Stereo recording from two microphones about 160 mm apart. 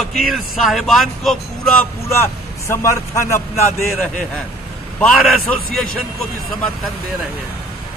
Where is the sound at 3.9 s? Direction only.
Centre (ahead or behind).